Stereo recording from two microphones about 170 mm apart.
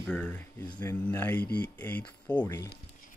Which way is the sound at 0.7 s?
25° left (ahead or behind).